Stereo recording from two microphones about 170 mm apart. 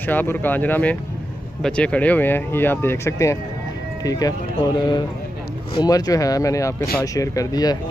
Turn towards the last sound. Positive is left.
turn(degrees=20)  # may be behind; listen again after turning